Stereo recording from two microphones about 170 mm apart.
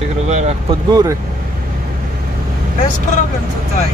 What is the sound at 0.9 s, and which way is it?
Speech, 25° right (ahead or behind).